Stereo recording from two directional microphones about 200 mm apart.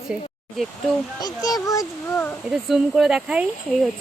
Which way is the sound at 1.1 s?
20° left (ahead or behind).